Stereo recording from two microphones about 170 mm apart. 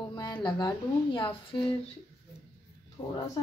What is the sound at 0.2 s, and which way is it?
Speech, 25° left (ahead or behind).